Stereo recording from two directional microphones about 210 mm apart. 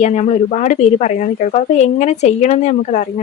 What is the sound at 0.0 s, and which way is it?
Speech, 35° left (ahead or behind).